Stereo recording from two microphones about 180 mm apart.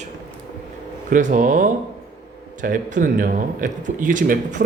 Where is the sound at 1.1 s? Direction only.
45° right (ahead or behind).